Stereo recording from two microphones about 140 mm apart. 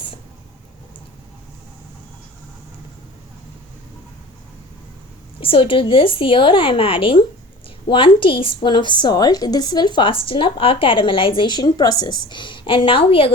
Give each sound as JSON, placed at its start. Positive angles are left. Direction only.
{"t": 5.4, "sound": "a woman's voice", "side_deg": 40}